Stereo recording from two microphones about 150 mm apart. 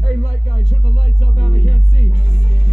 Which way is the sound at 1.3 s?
35° right (ahead or behind).